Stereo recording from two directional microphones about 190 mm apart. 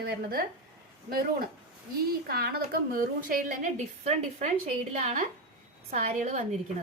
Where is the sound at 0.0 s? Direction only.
50° right (ahead or behind).